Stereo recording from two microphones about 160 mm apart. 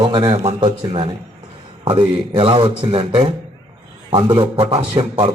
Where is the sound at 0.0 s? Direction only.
30° right (ahead or behind).